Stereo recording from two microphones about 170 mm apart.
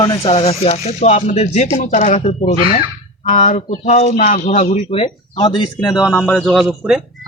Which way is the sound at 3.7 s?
40° left (ahead or behind).